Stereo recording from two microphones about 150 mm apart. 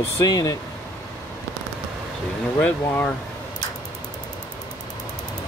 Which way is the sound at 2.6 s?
10° left (ahead or behind).